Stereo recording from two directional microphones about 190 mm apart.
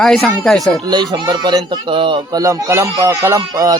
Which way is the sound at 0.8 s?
20° right (ahead or behind).